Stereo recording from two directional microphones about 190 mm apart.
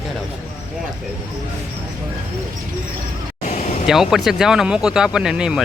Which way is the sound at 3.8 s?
Centre (ahead or behind).